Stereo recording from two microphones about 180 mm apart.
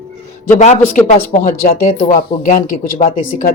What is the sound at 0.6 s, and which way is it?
Speech, 40° left (ahead or behind).